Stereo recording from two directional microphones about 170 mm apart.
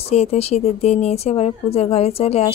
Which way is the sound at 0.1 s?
40° left (ahead or behind).